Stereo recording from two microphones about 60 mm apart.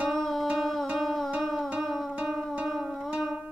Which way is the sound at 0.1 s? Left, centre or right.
Centre.